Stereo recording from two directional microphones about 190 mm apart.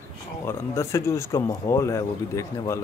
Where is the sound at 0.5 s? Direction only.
15° left (ahead or behind).